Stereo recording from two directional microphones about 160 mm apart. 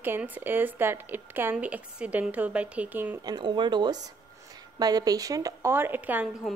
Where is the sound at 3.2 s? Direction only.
25° right (ahead or behind).